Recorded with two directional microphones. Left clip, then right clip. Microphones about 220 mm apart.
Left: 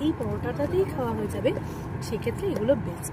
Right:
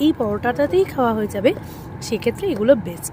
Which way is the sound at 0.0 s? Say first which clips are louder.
Right 10 dB; 40° right (ahead or behind).